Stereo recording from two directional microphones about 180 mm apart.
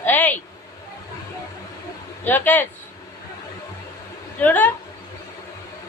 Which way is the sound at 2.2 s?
10° left (ahead or behind).